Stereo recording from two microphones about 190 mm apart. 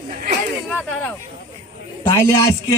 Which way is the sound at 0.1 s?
45° right (ahead or behind).